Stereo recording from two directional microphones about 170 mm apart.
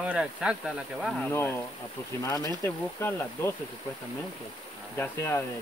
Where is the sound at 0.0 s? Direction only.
5° right (ahead or behind).